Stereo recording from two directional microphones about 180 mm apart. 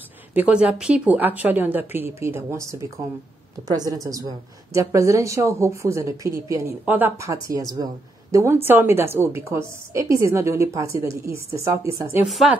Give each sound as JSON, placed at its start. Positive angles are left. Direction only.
{"t": 0.3, "sound": "a woman's voice", "side_deg": -5}
{"t": 12.3, "sound": "speech", "side_deg": 0}